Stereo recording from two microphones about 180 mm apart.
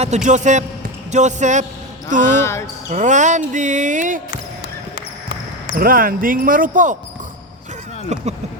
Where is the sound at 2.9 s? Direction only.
40° right (ahead or behind).